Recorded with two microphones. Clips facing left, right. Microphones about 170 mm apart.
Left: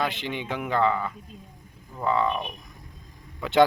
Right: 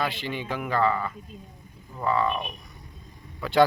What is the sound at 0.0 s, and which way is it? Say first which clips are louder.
Speech: left 1 dB; 20° left (ahead or behind).